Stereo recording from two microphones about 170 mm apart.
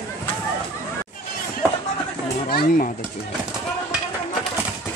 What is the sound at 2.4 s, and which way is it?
Speech, 60° left (ahead or behind).